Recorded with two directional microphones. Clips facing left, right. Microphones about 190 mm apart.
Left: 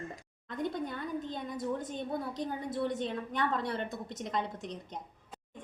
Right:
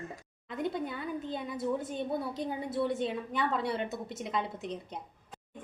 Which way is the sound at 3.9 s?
25° right (ahead or behind).